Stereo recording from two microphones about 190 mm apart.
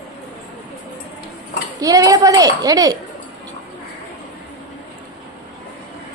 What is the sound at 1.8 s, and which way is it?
A woman's voice, 20° right (ahead or behind).